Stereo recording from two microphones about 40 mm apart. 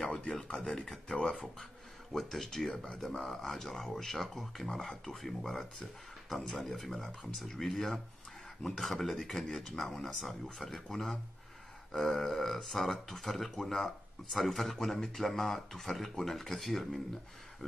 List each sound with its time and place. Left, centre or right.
0.1 s a sound: left
0.6 s speech: centre
2.1 s speech: centre
3.2 s speech: centre